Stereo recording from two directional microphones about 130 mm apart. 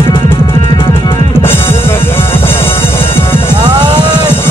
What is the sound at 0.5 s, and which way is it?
Music, 40° left (ahead or behind).